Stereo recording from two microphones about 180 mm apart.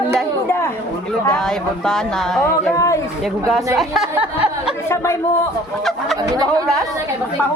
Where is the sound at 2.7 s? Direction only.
15° left (ahead or behind).